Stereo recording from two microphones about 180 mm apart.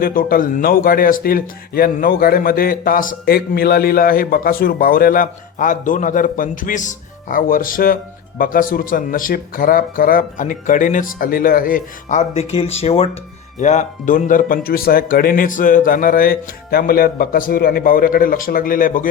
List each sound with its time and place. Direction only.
0.0 s speech: 50° left (ahead or behind)